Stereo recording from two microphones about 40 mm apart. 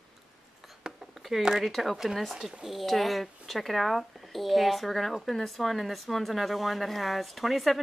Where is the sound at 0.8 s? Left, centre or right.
Right.